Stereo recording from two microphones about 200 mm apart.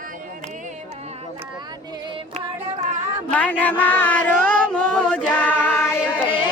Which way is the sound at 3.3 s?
5° left (ahead or behind).